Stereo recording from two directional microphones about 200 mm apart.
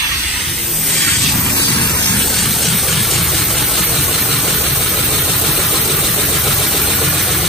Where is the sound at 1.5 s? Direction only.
25° left (ahead or behind).